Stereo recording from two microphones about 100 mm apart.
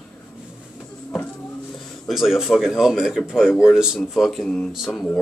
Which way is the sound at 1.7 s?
Centre (ahead or behind).